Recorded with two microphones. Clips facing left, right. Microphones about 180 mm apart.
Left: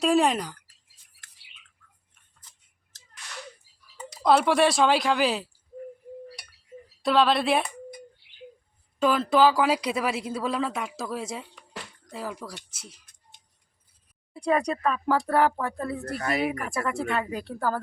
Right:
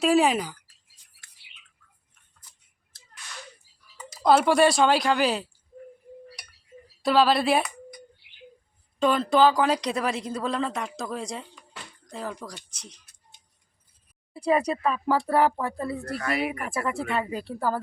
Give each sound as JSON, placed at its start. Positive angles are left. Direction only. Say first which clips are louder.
{"t": 0.0, "sound": "speech", "louder": "right 1 dB", "side_deg": 0}
{"t": 4.1, "sound": "speech", "louder": "right 1 dB", "side_deg": 0}
{"t": 7.0, "sound": "speech", "louder": "right 1 dB", "side_deg": 0}
{"t": 9.0, "sound": "speech", "louder": "even", "side_deg": 5}
{"t": 14.3, "sound": "speech", "louder": "right 1 dB", "side_deg": -5}
{"t": 16.1, "sound": "speech", "louder": "left 1 dB", "side_deg": 35}
{"t": 16.4, "sound": "speech", "louder": "left 1 dB", "side_deg": 0}